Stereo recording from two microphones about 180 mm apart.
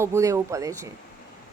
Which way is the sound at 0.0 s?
15° right (ahead or behind).